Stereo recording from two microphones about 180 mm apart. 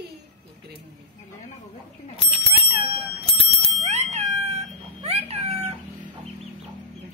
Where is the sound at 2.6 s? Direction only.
30° right (ahead or behind).